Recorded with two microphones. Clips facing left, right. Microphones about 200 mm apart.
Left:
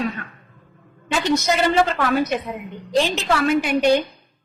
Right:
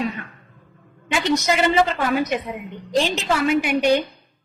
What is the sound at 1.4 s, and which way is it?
A woman's voice, 15° right (ahead or behind).